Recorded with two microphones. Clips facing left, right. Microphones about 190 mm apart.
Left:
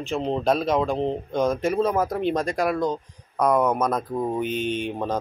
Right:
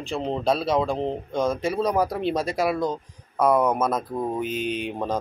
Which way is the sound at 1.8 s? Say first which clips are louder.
Left 1 dB; 15° right (ahead or behind).